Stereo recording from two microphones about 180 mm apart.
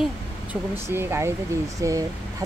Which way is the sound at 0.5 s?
15° right (ahead or behind).